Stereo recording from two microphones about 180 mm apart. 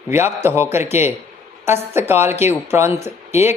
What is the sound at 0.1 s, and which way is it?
Speech, 15° right (ahead or behind).